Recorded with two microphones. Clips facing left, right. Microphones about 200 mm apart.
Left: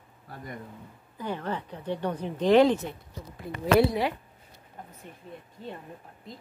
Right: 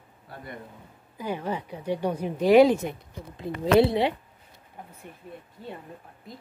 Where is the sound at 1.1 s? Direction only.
10° right (ahead or behind).